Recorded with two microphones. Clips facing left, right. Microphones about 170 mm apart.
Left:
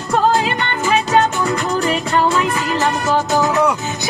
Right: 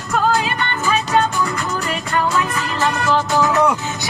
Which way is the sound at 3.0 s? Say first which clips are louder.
Even; 20° left (ahead or behind).